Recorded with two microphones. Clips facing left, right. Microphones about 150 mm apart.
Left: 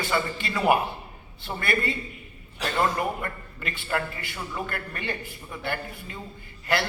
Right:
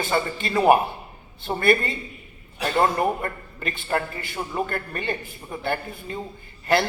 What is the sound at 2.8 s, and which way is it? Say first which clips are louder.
A man's voice: right 4 dB; 35° right (ahead or behind).